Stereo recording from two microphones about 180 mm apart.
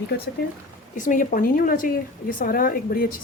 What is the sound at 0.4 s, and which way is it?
Speech, 55° left (ahead or behind).